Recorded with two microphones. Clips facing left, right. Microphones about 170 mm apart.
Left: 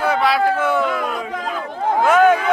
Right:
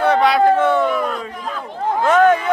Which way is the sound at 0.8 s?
90° left.